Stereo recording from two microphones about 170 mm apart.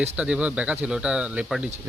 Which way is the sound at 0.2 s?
5° right (ahead or behind).